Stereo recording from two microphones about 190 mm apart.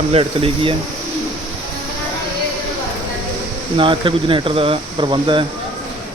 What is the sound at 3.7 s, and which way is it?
Speech, 25° right (ahead or behind).